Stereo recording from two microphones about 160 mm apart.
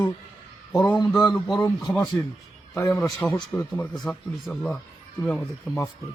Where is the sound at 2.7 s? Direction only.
20° left (ahead or behind).